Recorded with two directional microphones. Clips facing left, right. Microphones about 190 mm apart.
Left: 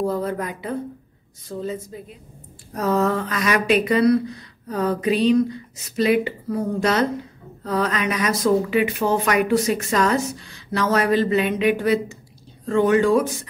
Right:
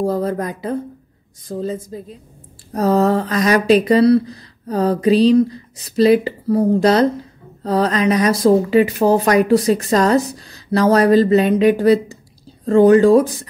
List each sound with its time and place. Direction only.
0.0 s speech: 35° right (ahead or behind)